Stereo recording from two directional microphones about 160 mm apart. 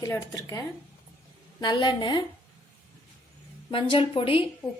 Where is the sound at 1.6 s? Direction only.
30° left (ahead or behind).